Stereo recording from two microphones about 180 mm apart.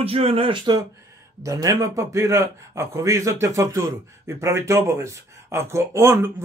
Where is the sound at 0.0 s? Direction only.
35° right (ahead or behind).